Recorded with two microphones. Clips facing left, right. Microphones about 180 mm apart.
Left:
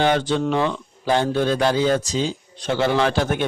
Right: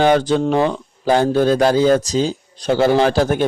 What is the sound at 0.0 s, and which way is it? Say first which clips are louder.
A man's voice: right 5 dB; 40° right (ahead or behind).